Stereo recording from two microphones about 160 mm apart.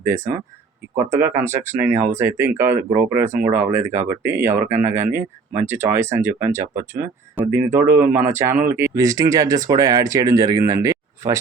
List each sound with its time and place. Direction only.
0.0 s speech: 15° right (ahead or behind)
7.7 s speech: 15° right (ahead or behind)
10.7 s a sound: 20° right (ahead or behind)